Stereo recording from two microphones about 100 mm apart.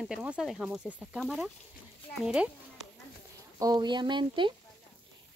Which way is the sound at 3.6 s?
45° right (ahead or behind).